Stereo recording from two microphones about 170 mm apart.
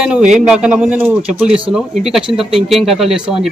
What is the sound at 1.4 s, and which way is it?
Speech, 30° right (ahead or behind).